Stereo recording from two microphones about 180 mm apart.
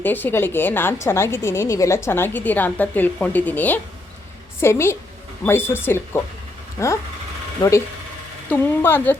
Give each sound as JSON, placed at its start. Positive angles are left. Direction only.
{"t": 0.0, "sound": "a woman's voice", "side_deg": 10}
{"t": 8.4, "sound": "a woman's voice", "side_deg": 10}